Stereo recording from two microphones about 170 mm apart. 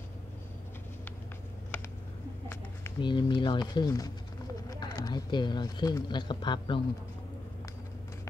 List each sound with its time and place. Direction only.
3.0 s speech: 25° left (ahead or behind)